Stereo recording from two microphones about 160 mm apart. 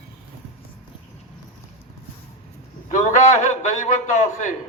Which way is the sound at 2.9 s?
50° left (ahead or behind).